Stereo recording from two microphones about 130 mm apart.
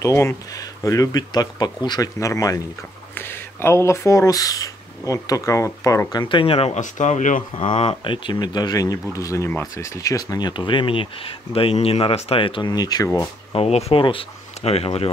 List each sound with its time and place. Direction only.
0.0 s speech: 20° left (ahead or behind)
6.2 s speech: 45° left (ahead or behind)
6.8 s speech: 70° left (ahead or behind)
7.5 s speech: 45° left (ahead or behind); by 13.3 s 25° left (ahead or behind)
13.5 s speech: 50° left (ahead or behind)